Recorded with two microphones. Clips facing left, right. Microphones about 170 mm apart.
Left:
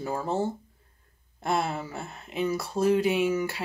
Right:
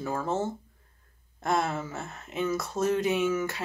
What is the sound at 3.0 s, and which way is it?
Speech, 30° left (ahead or behind).